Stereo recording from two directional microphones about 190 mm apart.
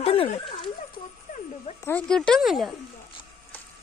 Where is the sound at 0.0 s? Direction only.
30° left (ahead or behind).